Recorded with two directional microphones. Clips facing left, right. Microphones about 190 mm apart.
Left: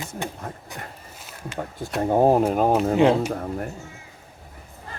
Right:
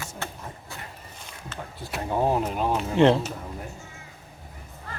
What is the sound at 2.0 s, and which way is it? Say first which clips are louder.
Speech: left 7 dB; 45° left (ahead or behind).